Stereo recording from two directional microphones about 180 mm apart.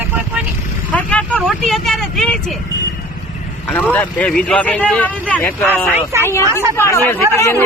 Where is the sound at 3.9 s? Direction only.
5° left (ahead or behind).